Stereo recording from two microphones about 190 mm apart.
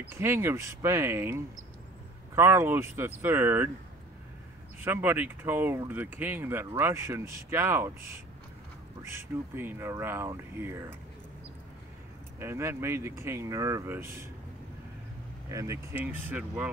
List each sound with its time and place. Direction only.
0.1 s speech: 15° right (ahead or behind)
4.7 s speech: 10° right (ahead or behind)
9.1 s speech: 10° right (ahead or behind)
12.4 s speech: 15° right (ahead or behind)
15.5 s speech: 15° right (ahead or behind)